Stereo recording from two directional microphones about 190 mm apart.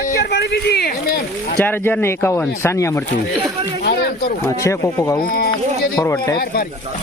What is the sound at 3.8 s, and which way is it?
Speech, 55° left (ahead or behind).